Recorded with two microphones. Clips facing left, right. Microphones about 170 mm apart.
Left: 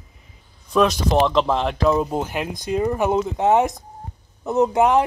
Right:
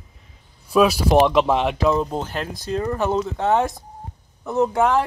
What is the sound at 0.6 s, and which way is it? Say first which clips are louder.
Speech: right 2 dB; 5° right (ahead or behind).